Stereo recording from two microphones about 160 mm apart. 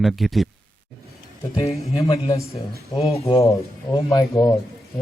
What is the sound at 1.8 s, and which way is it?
Speech, 25° left (ahead or behind).